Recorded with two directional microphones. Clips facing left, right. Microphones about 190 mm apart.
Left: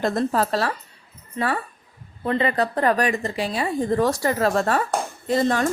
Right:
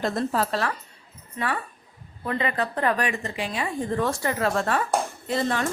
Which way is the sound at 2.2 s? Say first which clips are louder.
Left 5 dB; 30° left (ahead or behind).